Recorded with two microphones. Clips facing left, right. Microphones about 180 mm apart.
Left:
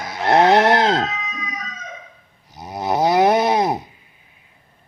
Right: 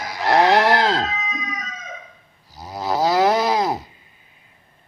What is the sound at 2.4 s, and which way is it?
Snoring, 20° left (ahead or behind).